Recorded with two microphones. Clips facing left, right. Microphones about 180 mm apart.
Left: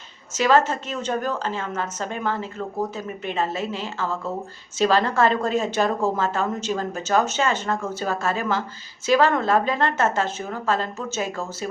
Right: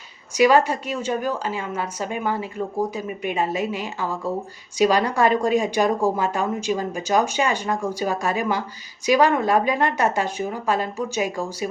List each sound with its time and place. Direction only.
0.3 s a woman's voice: 15° right (ahead or behind)